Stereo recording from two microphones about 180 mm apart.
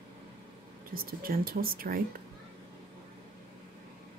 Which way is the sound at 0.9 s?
55° right (ahead or behind).